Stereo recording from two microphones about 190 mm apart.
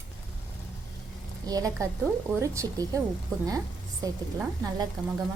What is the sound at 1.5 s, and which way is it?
A woman's voice, 20° right (ahead or behind).